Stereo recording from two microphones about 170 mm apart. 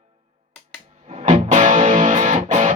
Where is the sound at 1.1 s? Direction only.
40° right (ahead or behind).